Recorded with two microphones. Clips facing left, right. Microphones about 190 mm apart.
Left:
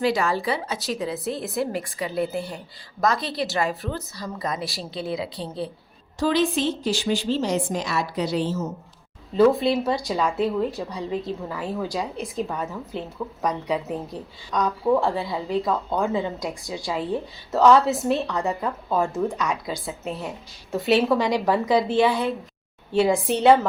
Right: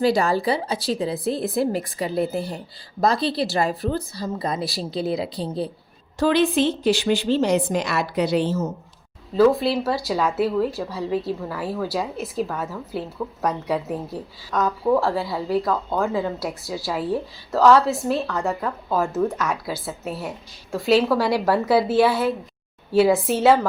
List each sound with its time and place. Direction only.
0.0 s a woman's voice: 35° right (ahead or behind)
6.1 s a woman's voice: 60° right (ahead or behind)
9.4 s a woman's voice: centre (ahead or behind)